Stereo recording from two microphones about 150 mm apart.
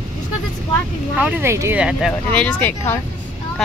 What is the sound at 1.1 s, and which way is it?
Speech, 10° right (ahead or behind).